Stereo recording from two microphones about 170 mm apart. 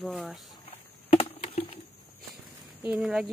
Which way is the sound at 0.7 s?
35° left (ahead or behind).